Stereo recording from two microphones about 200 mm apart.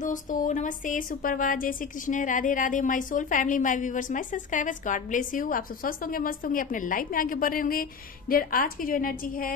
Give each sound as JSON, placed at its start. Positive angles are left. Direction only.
{"t": 0.0, "sound": "a woman's voice", "side_deg": 40}